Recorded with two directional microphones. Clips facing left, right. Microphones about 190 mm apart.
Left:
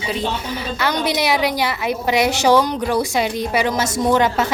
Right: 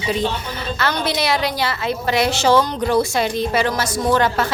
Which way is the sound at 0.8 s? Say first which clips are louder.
Left 1 dB; 15° left (ahead or behind).